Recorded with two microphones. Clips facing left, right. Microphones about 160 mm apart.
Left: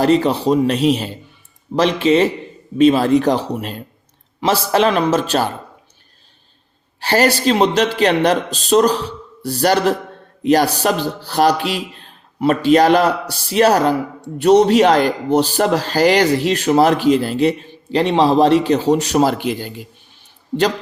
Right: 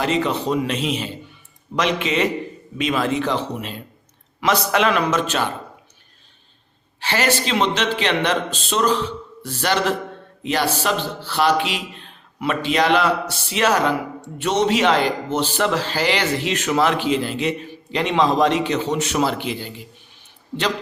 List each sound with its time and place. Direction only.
0.0 s a man's voice: 35° left (ahead or behind)
4.4 s a man's voice: 30° left (ahead or behind)
7.0 s a man's voice: 40° left (ahead or behind)